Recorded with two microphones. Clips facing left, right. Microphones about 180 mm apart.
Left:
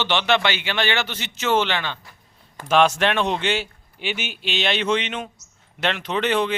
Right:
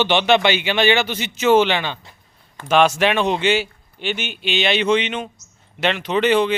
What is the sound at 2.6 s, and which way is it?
Speech, centre (ahead or behind).